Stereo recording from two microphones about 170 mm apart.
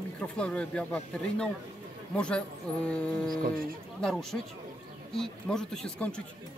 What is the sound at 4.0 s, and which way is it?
Speech, 5° left (ahead or behind).